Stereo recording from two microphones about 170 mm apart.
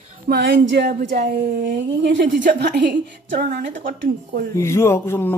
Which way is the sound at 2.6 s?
80° right.